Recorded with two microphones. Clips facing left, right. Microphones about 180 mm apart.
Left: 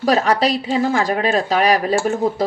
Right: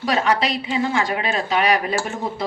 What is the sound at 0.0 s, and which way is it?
A woman's voice, 40° left (ahead or behind).